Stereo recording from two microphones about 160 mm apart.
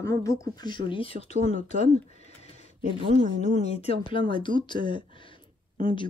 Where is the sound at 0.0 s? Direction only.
20° left (ahead or behind); by 1.6 s 40° left (ahead or behind).